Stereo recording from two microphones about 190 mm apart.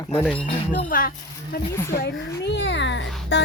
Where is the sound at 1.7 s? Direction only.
15° left (ahead or behind).